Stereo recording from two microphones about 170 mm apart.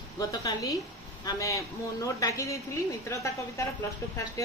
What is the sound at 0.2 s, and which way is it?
Speech, 20° left (ahead or behind).